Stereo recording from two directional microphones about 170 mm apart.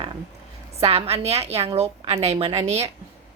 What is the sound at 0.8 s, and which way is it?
A woman's voice, 35° right (ahead or behind).